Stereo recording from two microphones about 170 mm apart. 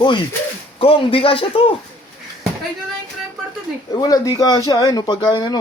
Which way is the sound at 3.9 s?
20° left (ahead or behind).